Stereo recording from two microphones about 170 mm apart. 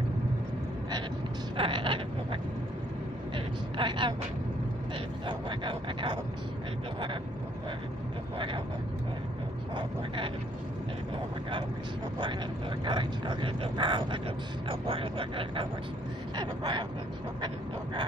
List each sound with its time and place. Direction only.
1.6 s speech: 30° right (ahead or behind)
3.7 s speech: 30° right (ahead or behind)
5.2 s speech: 30° right (ahead or behind)
9.8 s speech: 30° right (ahead or behind)
12.8 s speech: 30° right (ahead or behind)